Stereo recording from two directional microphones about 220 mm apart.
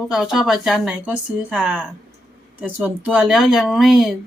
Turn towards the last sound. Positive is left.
turn(degrees=0)  # may be behind; listen again after turning